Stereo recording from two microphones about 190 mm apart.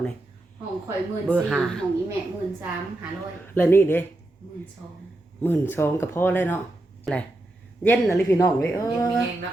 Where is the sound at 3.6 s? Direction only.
10° left (ahead or behind).